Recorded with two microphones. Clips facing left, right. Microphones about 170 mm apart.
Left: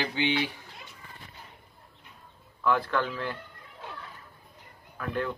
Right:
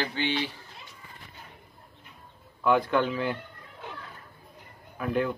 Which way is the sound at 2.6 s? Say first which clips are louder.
Right 3 dB; 15° right (ahead or behind).